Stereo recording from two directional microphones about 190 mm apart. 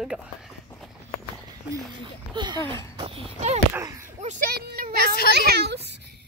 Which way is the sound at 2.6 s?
15° left (ahead or behind).